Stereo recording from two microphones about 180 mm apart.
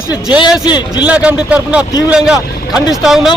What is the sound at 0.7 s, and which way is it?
Speech, 25° left (ahead or behind).